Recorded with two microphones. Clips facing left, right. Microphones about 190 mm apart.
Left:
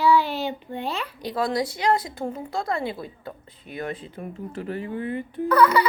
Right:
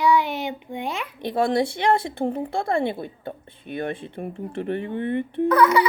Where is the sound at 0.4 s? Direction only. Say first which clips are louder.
Even; 15° right (ahead or behind).